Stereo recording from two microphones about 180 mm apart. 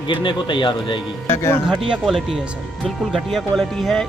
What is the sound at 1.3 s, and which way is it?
Speech, 15° left (ahead or behind).